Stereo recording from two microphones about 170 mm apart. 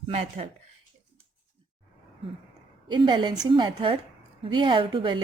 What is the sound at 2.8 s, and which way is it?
A woman's voice, 25° right (ahead or behind).